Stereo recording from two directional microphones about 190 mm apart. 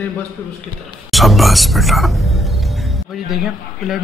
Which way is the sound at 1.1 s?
Centre (ahead or behind).